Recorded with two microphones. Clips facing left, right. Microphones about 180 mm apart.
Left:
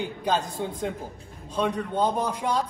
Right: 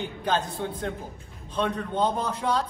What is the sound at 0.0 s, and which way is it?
A man's voice, 10° left (ahead or behind).